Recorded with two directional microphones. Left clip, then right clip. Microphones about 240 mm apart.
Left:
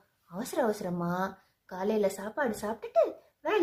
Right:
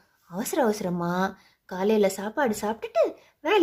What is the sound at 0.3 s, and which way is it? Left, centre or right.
A woman's voice, right.